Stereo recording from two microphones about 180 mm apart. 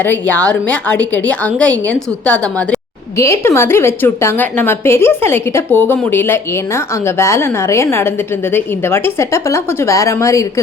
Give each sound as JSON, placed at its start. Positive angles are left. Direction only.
{"t": 0.0, "sound": "a woman's voice", "side_deg": 10}